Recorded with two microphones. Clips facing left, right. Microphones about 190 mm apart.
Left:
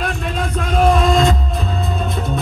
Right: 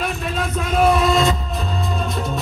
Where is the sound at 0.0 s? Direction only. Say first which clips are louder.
Left 1 dB; 5° right (ahead or behind).